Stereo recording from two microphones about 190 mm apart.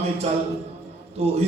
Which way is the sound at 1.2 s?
30° right (ahead or behind).